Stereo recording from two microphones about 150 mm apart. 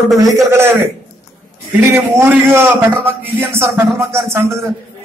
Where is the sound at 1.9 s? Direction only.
15° right (ahead or behind).